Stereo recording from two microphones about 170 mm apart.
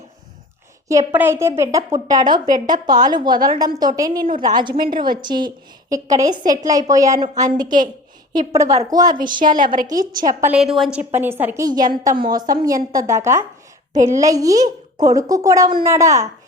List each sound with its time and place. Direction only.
0.9 s a woman's voice: 15° right (ahead or behind)
9.6 s a woman's voice: 50° right (ahead or behind)
10.5 s a woman's voice: centre (ahead or behind)
11.1 s a woman's voice: 15° right (ahead or behind)